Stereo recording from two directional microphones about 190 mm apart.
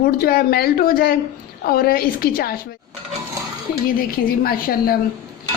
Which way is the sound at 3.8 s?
50° left (ahead or behind).